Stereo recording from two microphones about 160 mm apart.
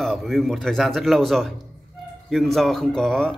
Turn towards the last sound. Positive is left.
turn(degrees=5)  # may be behind; listen again after turning